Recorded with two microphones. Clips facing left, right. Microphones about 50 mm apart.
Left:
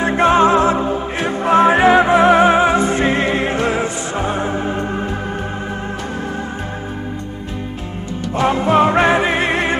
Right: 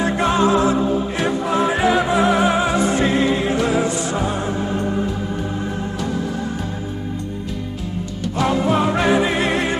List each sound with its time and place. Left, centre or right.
0.0 s music: left
8.4 s music: left